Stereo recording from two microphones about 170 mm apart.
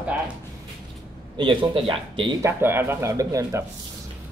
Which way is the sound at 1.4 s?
30° right (ahead or behind).